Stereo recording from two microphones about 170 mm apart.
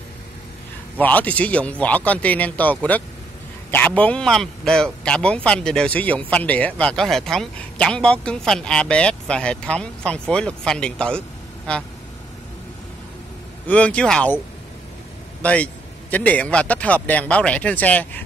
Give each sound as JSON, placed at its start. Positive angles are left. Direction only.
{"t": 0.9, "sound": "a man's voice", "side_deg": 10}
{"t": 13.7, "sound": "a man's voice", "side_deg": 5}
{"t": 15.4, "sound": "a man's voice", "side_deg": 5}